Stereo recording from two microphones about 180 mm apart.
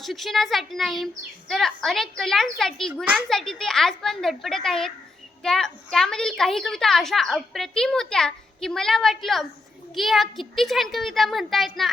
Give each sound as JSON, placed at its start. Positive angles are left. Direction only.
{"t": 0.0, "sound": "a woman's voice", "side_deg": 0}
{"t": 2.9, "sound": "a child's voice", "side_deg": -10}
{"t": 3.2, "sound": "a woman's voice", "side_deg": 5}